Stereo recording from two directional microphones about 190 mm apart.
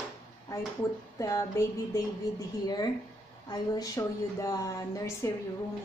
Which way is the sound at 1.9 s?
15° left (ahead or behind).